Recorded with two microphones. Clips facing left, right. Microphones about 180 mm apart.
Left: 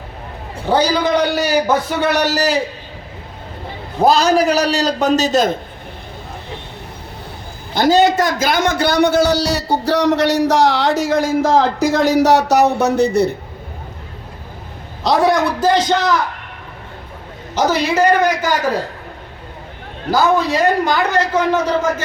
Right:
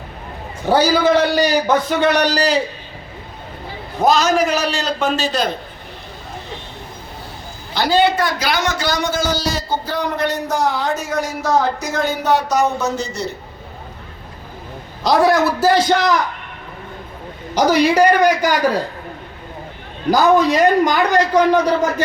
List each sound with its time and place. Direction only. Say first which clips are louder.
0.7 s a man's voice: right 1 dB; 5° right (ahead or behind)
1.4 s a man's voice: even; 10° left (ahead or behind)
4.0 s a man's voice: left 2 dB; 35° left (ahead or behind)
7.7 s a man's voice: left 3 dB; 45° left (ahead or behind)
15.0 s a man's voice: even; centre (ahead or behind)
17.5 s a man's voice: right 2 dB; 15° right (ahead or behind)
20.1 s a man's voice: right 2 dB; 15° right (ahead or behind)